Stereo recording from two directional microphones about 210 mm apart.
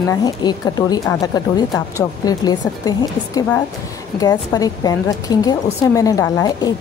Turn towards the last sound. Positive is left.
turn(degrees=15)  # may be behind; listen again after turning